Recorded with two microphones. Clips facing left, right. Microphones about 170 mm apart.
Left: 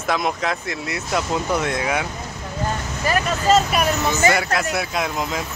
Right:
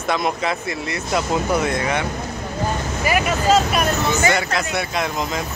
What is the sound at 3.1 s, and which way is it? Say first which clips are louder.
Speech: even; 10° right (ahead or behind).